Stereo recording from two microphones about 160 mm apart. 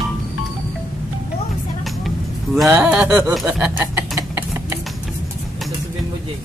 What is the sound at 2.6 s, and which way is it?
Speech, 10° right (ahead or behind).